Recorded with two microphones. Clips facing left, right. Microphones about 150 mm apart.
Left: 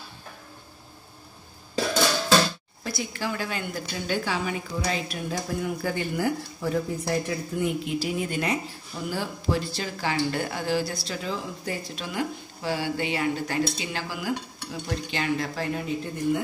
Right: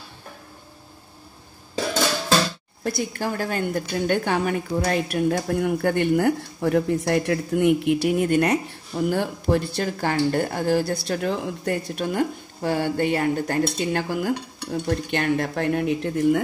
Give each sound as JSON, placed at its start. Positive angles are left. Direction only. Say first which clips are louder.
{"t": 2.8, "sound": "a woman's voice", "louder": "right 5 dB", "side_deg": -50}